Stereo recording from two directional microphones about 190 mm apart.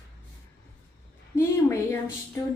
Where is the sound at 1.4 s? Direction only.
10° left (ahead or behind).